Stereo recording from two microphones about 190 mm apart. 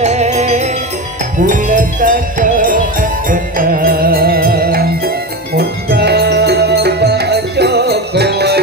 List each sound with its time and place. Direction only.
0.0 s music: 35° right (ahead or behind); by 8.5 s 60° right (ahead or behind)